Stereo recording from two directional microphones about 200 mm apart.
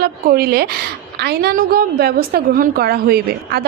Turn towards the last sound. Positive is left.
turn(degrees=-50)  # may be behind; listen again after turning